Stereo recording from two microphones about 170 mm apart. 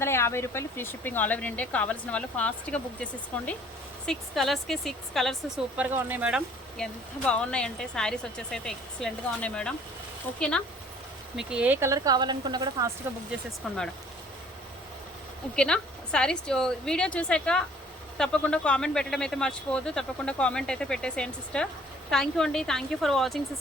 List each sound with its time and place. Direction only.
0.0 s speech: 15° left (ahead or behind)
5.8 s speech: 10° right (ahead or behind)
6.7 s speech: 5° left (ahead or behind)
11.3 s speech: 5° right (ahead or behind); by 12.9 s 25° right (ahead or behind)
13.6 s speech: centre (ahead or behind)
15.5 s speech: 5° left (ahead or behind)